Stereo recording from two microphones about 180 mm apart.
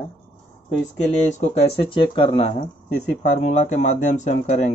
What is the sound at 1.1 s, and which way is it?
Speech, 40° left (ahead or behind).